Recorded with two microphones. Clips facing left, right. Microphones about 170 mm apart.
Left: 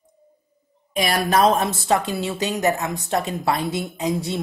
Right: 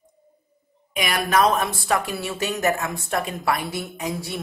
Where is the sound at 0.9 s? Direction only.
30° left (ahead or behind).